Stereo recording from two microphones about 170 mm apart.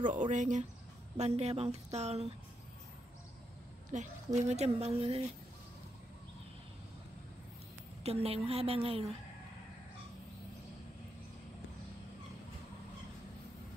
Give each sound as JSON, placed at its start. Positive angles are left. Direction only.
{"t": 0.0, "sound": "speech", "side_deg": -50}
{"t": 3.9, "sound": "speech", "side_deg": -45}
{"t": 8.0, "sound": "speech", "side_deg": -35}